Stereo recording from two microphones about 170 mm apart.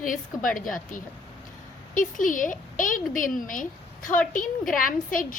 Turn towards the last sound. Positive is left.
turn(degrees=55)  # may be behind; listen again after turning